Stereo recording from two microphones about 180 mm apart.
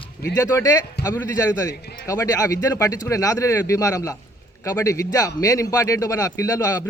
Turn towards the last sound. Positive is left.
turn(degrees=20)  # may be behind; listen again after turning